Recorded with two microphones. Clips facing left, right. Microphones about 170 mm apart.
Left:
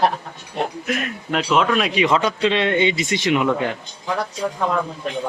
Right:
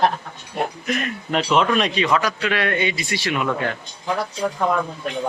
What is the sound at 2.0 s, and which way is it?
Speech, 25° left (ahead or behind).